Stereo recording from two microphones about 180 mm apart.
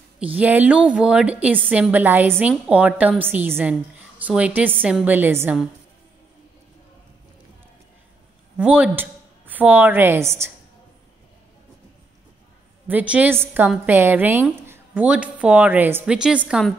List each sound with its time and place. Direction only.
0.3 s a woman's voice: 10° right (ahead or behind)
8.5 s a woman's voice: 10° right (ahead or behind)
12.8 s a woman's voice: 10° right (ahead or behind)